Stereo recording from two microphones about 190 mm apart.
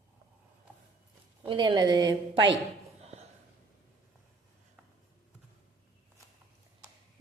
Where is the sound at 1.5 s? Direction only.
25° right (ahead or behind).